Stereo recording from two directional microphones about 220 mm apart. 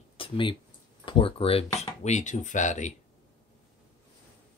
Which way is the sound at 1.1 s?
25° left (ahead or behind).